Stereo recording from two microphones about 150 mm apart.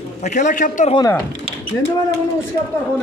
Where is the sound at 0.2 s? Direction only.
55° left (ahead or behind).